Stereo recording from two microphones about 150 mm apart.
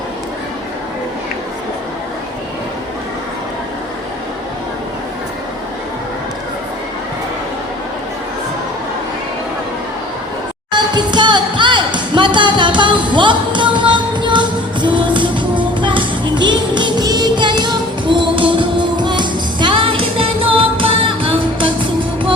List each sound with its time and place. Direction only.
10.7 s music: 30° right (ahead or behind)